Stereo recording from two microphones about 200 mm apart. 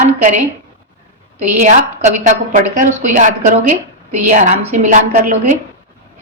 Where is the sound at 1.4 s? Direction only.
35° right (ahead or behind).